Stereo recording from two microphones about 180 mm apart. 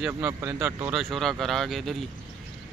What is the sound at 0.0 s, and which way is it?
Speech, 15° right (ahead or behind).